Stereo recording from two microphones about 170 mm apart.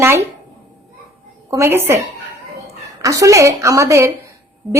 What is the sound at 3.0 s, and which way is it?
Speech, 20° right (ahead or behind).